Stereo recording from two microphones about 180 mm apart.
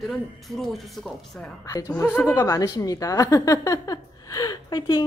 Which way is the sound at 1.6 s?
15° left (ahead or behind).